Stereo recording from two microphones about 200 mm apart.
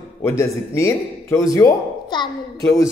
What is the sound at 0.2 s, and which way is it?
Speech, 15° left (ahead or behind).